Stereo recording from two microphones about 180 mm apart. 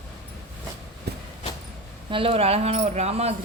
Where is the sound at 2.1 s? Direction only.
30° right (ahead or behind).